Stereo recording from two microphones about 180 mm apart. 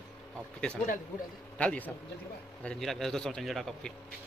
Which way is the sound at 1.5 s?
10° left (ahead or behind).